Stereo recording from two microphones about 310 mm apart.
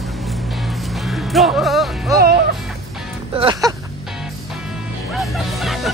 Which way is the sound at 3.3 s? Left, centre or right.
Centre.